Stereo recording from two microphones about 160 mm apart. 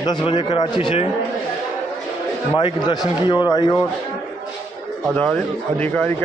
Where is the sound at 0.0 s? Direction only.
30° left (ahead or behind).